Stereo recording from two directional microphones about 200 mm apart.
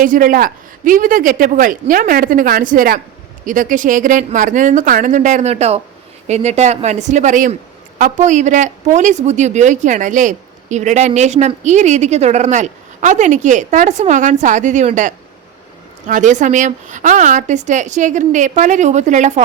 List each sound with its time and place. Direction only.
0.0 s a man's voice: 45° right (ahead or behind)